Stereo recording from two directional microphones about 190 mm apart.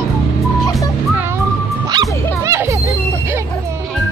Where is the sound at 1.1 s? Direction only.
10° right (ahead or behind).